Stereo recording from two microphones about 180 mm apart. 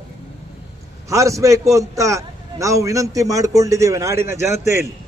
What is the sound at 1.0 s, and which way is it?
A man's voice, 15° right (ahead or behind).